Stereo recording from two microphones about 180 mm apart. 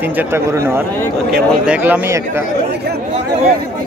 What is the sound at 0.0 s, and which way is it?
Speech, 10° right (ahead or behind).